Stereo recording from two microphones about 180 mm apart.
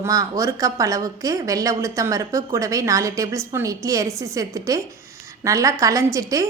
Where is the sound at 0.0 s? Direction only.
20° right (ahead or behind).